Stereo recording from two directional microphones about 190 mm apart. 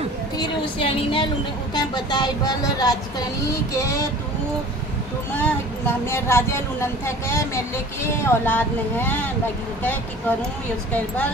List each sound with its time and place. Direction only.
0.4 s speech: 30° left (ahead or behind)
5.4 s speech: 10° left (ahead or behind)